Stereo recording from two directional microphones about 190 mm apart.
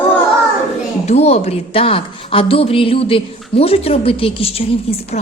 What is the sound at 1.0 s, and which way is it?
A woman's voice, 35° left (ahead or behind).